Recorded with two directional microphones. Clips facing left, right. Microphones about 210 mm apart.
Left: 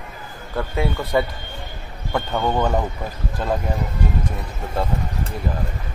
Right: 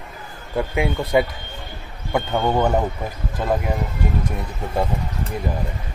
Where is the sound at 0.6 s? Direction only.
15° right (ahead or behind).